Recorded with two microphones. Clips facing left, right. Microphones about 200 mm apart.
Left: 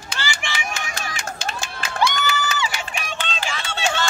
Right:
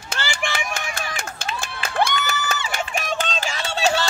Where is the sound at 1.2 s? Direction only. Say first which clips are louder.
Left 1 dB; 45° left (ahead or behind).